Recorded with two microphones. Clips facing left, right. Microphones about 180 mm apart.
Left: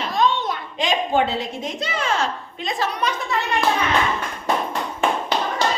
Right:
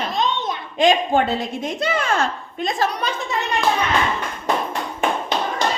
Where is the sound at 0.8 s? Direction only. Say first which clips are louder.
Right 4 dB; 50° right (ahead or behind).